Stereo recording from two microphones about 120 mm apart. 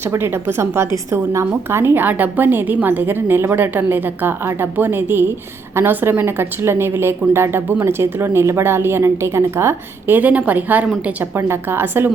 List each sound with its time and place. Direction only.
0.1 s a woman's voice: 20° right (ahead or behind)